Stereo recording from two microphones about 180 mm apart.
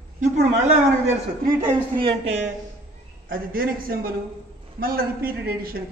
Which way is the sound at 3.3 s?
55° right (ahead or behind).